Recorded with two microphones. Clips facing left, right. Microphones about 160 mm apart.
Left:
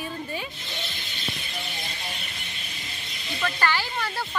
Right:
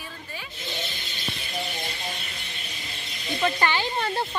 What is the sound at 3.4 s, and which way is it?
Speech, 20° right (ahead or behind).